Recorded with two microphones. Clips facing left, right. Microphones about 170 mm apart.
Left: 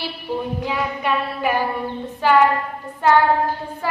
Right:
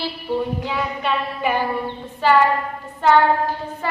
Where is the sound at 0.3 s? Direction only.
10° left (ahead or behind).